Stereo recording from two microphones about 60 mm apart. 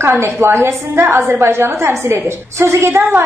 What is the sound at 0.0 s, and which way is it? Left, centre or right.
A woman's voice, right.